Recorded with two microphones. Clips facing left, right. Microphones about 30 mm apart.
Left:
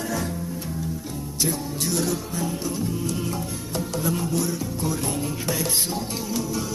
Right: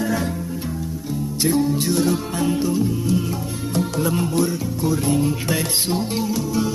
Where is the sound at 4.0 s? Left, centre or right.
Right.